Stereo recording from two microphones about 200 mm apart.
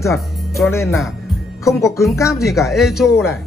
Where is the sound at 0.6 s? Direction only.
15° left (ahead or behind).